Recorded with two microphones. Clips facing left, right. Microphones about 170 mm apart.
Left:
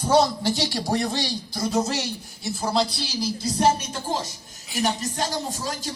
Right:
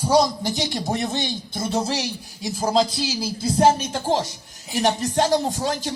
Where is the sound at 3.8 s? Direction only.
90° right.